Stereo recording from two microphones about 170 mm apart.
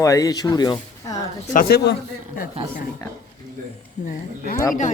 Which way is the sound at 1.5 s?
70° left (ahead or behind).